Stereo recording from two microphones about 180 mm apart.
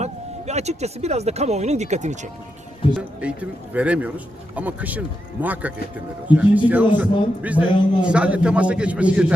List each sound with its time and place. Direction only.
0.0 s speech: 40° right (ahead or behind)
3.0 s a man's voice: 10° right (ahead or behind)